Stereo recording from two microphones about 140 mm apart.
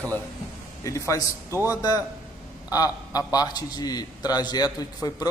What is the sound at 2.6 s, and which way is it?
A man's voice, 25° left (ahead or behind).